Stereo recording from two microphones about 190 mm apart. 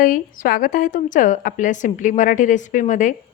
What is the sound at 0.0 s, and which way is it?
A woman's voice, 45° left (ahead or behind).